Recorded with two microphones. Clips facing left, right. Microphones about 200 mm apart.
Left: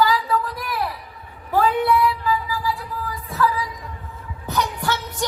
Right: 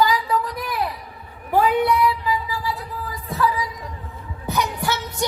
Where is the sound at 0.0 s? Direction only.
20° right (ahead or behind).